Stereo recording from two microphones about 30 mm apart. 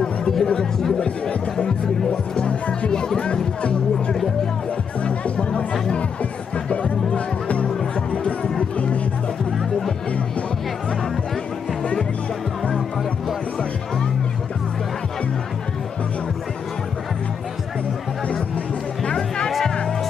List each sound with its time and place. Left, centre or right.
0.0 s music: left
0.9 s speech: left
2.9 s speech: left
5.0 s music: left
6.7 s music: left
19.1 s music: centre